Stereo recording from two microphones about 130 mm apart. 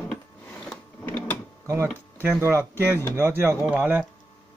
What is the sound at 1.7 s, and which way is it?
Speech, 20° right (ahead or behind).